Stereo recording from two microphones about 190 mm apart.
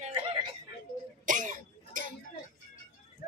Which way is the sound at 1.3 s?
45° right (ahead or behind).